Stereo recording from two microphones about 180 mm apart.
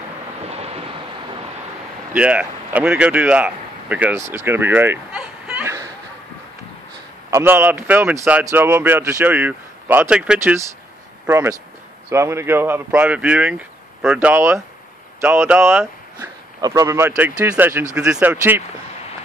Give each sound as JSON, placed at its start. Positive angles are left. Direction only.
{"t": 0.5, "sound": "wind noise", "side_deg": -35}
{"t": 2.1, "sound": "speech", "side_deg": -10}
{"t": 4.3, "sound": "a sound", "side_deg": -10}
{"t": 7.2, "sound": "speech", "side_deg": -15}